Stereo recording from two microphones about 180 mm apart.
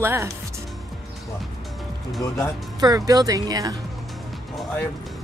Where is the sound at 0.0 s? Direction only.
15° right (ahead or behind).